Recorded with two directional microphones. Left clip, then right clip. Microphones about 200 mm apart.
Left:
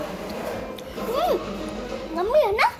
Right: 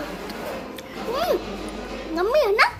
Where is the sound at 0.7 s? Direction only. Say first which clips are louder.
Even; 10° right (ahead or behind).